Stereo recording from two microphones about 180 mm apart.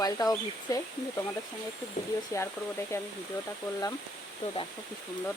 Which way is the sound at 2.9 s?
15° left (ahead or behind).